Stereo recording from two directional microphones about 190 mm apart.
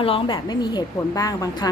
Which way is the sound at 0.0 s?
25° left (ahead or behind).